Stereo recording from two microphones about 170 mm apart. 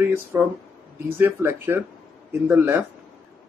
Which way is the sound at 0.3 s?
10° right (ahead or behind).